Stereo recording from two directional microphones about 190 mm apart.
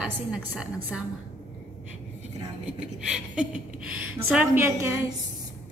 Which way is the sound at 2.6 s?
5° right (ahead or behind).